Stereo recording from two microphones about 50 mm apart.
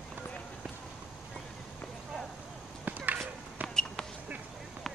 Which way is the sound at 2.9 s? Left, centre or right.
Right.